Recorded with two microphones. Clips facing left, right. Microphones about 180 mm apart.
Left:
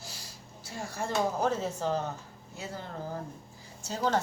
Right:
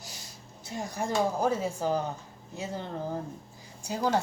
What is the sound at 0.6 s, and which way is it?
A woman's voice, 20° right (ahead or behind).